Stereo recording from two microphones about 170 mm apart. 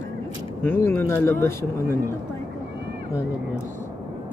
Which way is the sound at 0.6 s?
15° left (ahead or behind).